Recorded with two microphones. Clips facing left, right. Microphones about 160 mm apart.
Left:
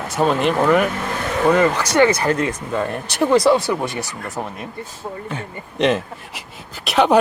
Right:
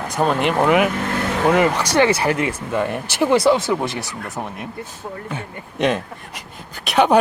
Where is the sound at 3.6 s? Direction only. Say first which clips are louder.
Right 1 dB; 20° right (ahead or behind).